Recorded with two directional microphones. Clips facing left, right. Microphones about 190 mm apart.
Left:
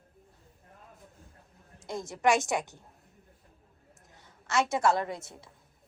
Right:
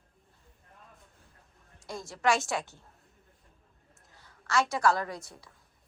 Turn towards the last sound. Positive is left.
turn(degrees=25)  # may be behind; listen again after turning